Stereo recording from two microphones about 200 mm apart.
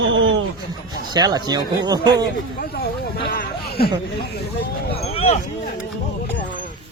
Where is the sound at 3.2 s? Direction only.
50° left (ahead or behind).